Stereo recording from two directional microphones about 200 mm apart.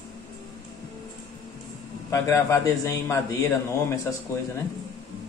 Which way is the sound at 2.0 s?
15° left (ahead or behind).